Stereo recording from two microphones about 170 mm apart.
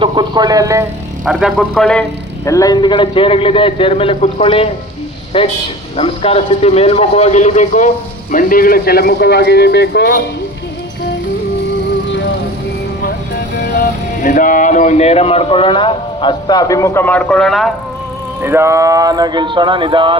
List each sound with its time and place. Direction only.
0.0 s speech: 25° right (ahead or behind)
1.2 s speech: centre (ahead or behind)
2.4 s a man's voice: 20° left (ahead or behind); by 10.2 s 80° left
13.6 s speech: 55° left (ahead or behind); by 17.7 s centre (ahead or behind)
18.4 s speech: 15° right (ahead or behind)